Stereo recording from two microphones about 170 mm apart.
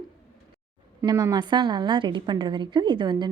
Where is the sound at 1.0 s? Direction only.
20° right (ahead or behind).